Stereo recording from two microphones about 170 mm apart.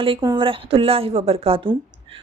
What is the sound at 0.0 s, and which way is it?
A woman's voice, 30° right (ahead or behind).